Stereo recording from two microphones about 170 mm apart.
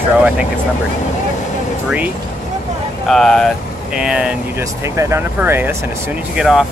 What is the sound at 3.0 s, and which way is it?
Speech, 5° left (ahead or behind).